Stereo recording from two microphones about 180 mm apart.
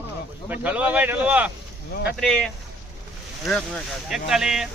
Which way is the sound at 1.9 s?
65° left (ahead or behind).